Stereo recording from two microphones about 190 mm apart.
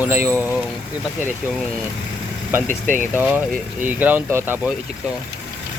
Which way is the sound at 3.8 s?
10° right (ahead or behind).